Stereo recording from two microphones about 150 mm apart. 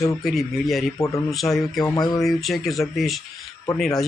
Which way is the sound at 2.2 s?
Centre (ahead or behind).